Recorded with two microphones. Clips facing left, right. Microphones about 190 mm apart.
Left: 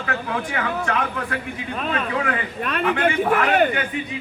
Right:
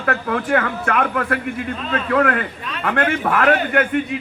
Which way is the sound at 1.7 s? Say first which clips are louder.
Right 1 dB; 60° left (ahead or behind).